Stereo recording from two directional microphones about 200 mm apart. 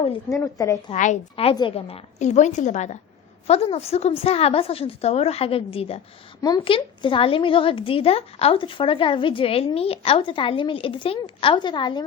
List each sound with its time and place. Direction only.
0.3 s a woman's voice: 15° left (ahead or behind)
0.9 s a woman's voice: 35° left (ahead or behind)